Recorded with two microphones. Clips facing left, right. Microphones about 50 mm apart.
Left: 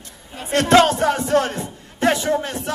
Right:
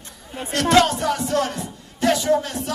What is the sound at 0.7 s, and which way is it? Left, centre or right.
Speech, left.